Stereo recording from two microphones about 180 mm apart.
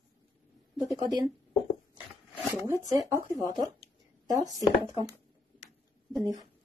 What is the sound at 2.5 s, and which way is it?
Speech, 15° right (ahead or behind).